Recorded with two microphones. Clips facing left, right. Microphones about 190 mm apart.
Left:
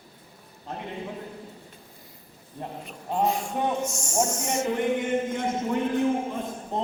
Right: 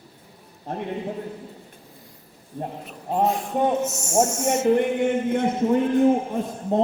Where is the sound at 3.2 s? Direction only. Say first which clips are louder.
Right 5 dB; centre (ahead or behind).